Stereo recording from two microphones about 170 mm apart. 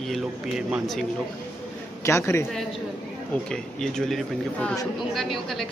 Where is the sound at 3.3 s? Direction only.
5° left (ahead or behind).